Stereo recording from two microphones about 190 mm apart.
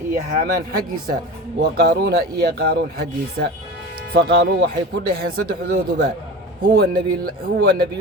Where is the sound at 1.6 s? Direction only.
55° right (ahead or behind).